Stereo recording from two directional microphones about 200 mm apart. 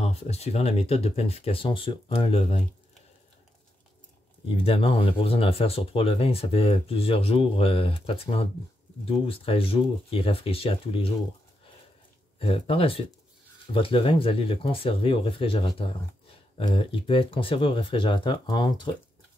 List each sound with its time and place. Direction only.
0.0 s speech: 30° left (ahead or behind)
4.5 s speech: 30° left (ahead or behind)
12.4 s speech: 25° left (ahead or behind)